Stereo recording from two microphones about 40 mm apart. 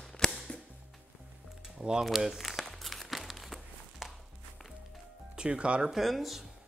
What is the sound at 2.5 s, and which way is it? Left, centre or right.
Crumpling, centre.